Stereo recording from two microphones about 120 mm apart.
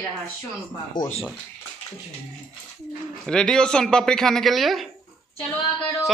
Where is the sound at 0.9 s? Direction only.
40° left (ahead or behind).